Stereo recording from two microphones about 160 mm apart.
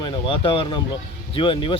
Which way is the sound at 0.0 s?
30° left (ahead or behind).